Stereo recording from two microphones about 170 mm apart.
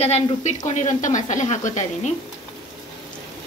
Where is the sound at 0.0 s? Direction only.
40° left (ahead or behind).